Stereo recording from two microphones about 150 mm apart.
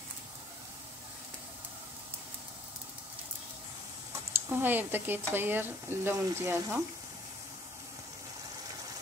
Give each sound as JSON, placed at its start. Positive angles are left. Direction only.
{"t": 4.3, "sound": "speech", "side_deg": -15}